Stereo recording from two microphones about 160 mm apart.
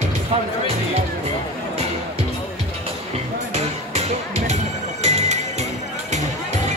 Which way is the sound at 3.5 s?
45° right (ahead or behind).